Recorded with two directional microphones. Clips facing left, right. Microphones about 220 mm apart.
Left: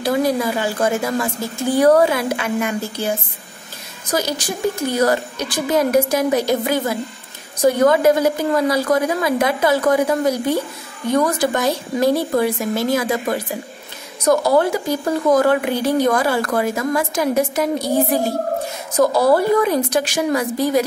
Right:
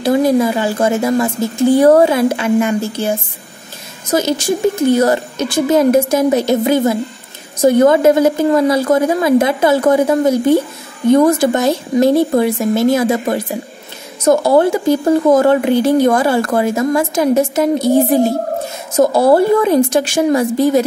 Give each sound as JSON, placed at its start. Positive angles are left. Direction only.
{"t": 0.0, "sound": "speech", "side_deg": -25}
{"t": 4.1, "sound": "speech", "side_deg": -25}